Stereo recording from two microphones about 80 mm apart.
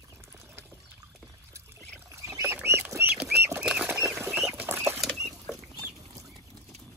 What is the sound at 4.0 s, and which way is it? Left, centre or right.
Bird flight, right.